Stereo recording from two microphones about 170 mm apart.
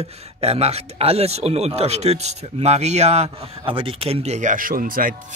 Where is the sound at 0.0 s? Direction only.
35° right (ahead or behind).